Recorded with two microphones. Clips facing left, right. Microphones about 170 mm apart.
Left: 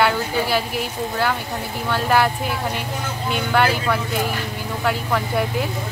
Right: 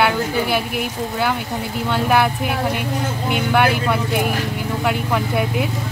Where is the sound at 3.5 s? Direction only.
10° right (ahead or behind).